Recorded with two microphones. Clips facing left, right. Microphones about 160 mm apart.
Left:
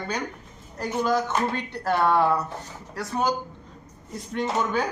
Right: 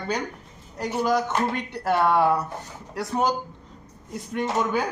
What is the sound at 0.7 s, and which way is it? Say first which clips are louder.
Speech: right 1 dB; 10° right (ahead or behind).